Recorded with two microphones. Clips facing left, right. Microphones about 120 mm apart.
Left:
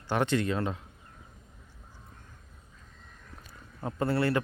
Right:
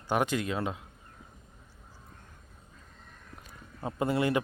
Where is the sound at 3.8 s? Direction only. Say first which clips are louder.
Even; 15° right (ahead or behind).